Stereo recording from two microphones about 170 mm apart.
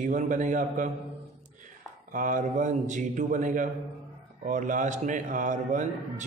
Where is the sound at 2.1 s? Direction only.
50° right (ahead or behind).